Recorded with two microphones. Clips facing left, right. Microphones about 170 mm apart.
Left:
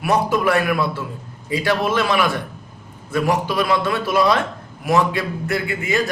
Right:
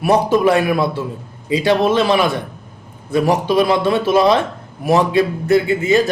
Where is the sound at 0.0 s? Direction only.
25° right (ahead or behind).